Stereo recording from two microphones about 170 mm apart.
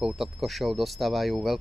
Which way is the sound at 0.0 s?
Centre (ahead or behind).